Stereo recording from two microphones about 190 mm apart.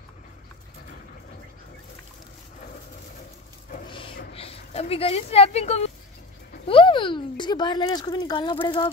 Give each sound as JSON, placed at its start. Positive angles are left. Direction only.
{"t": 4.3, "sound": "speech", "side_deg": 30}